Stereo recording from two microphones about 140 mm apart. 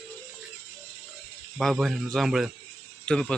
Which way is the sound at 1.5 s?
Centre (ahead or behind).